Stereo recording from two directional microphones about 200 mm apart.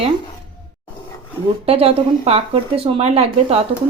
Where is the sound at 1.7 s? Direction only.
30° right (ahead or behind).